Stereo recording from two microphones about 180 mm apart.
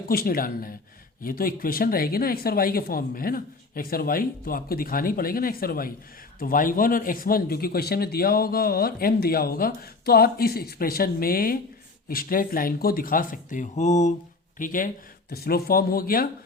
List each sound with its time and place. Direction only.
0.1 s a man's voice: 55° left (ahead or behind)
15.3 s a man's voice: 60° left (ahead or behind)